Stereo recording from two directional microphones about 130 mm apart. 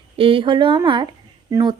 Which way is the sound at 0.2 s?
45° right (ahead or behind).